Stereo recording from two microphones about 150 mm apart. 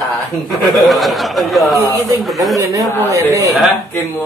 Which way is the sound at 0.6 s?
Centre (ahead or behind).